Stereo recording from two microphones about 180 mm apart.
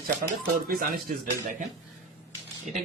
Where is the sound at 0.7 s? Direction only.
50° right (ahead or behind).